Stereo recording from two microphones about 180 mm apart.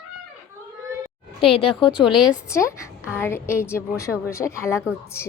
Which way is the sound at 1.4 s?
30° left (ahead or behind).